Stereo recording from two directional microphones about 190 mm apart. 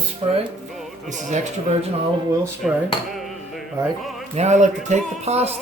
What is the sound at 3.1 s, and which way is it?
Music, centre (ahead or behind).